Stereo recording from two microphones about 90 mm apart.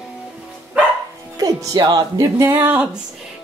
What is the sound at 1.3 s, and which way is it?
Speech, 50° right (ahead or behind).